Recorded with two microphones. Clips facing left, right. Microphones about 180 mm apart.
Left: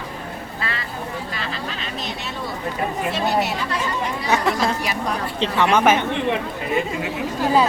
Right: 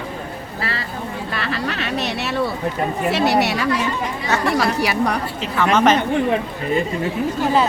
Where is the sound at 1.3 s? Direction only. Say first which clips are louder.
Right 5 dB; 65° right (ahead or behind).